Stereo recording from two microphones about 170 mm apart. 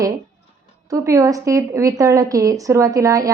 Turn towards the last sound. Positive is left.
turn(degrees=-20)  # may be behind; listen again after turning